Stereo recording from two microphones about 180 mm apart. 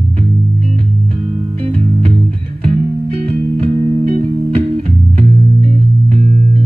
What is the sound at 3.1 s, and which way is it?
Music, 30° right (ahead or behind).